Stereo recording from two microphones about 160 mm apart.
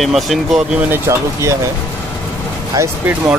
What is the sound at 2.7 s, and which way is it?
Speech, 20° right (ahead or behind).